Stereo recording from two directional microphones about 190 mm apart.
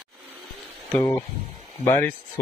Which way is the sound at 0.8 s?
10° left (ahead or behind).